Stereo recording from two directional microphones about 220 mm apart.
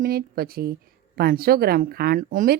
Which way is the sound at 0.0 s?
45° right (ahead or behind).